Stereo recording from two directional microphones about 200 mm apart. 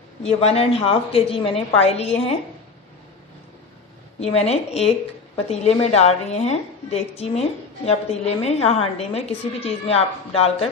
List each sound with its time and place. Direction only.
0.2 s a woman's voice: 30° left (ahead or behind)
4.2 s a woman's voice: 30° left (ahead or behind)